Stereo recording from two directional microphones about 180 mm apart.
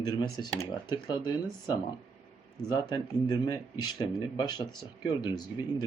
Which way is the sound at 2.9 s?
25° left (ahead or behind).